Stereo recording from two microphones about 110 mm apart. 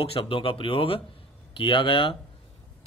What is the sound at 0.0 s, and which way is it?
A man's voice, 55° left (ahead or behind).